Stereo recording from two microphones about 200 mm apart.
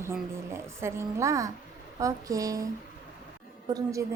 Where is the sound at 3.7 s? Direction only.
15° right (ahead or behind).